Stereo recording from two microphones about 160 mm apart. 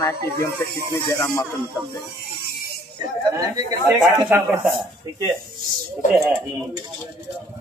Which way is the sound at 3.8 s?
20° right (ahead or behind).